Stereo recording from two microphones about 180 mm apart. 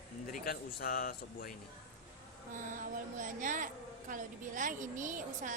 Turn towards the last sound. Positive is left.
turn(degrees=-45)  # may be behind; listen again after turning